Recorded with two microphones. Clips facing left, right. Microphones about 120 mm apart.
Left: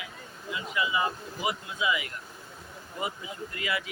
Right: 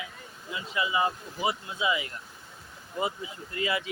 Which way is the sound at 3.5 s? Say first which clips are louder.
Right 4 dB; 25° right (ahead or behind).